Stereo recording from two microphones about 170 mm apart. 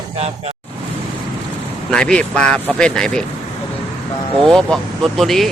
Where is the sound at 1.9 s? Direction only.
5° left (ahead or behind).